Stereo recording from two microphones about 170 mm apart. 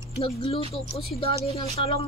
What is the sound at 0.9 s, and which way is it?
Speech, 35° left (ahead or behind).